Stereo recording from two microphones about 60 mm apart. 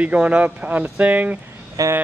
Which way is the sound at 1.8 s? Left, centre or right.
Right.